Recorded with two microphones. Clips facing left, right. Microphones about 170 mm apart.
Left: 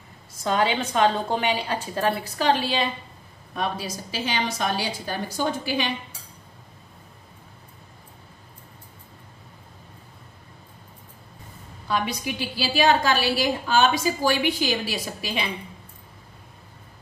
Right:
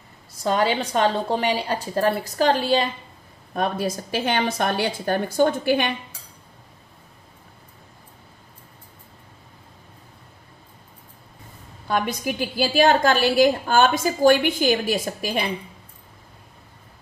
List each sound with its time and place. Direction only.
0.4 s a woman's voice: 35° right (ahead or behind); by 5.9 s 55° right (ahead or behind)
11.9 s a woman's voice: 50° right (ahead or behind)